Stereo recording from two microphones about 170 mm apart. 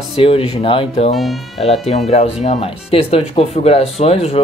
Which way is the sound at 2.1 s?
40° left (ahead or behind).